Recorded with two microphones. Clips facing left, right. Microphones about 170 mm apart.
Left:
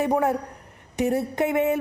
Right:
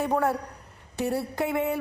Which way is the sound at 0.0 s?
15° left (ahead or behind).